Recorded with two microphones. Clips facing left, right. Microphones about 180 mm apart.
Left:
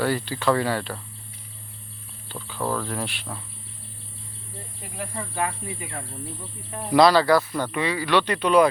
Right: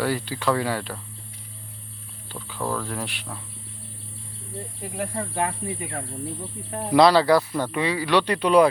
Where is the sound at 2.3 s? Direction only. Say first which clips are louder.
Left 1 dB; 10° right (ahead or behind).